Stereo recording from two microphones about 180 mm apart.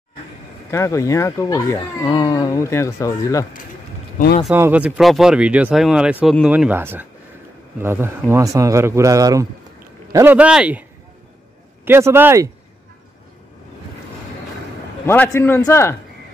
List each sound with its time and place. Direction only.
0.7 s speech: 15° left (ahead or behind)
4.5 s a man's voice: 10° right (ahead or behind)
15.0 s speech: 10° left (ahead or behind)